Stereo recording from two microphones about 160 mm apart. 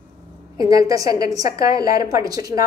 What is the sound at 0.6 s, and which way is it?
A woman's voice, 20° right (ahead or behind).